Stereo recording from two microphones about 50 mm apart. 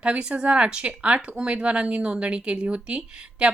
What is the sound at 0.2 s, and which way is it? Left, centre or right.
A woman's voice, right.